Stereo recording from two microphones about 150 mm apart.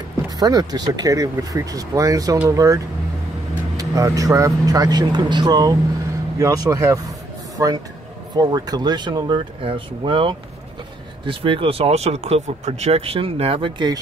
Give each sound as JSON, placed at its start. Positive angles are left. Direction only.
{"t": 0.4, "sound": "speech", "side_deg": -25}